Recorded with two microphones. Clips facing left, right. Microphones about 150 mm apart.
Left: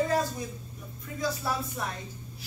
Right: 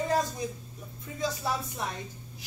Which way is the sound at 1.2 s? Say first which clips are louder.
Even; 20° right (ahead or behind).